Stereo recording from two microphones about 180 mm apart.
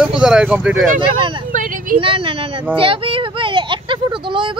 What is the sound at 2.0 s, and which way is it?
Speech, 30° right (ahead or behind).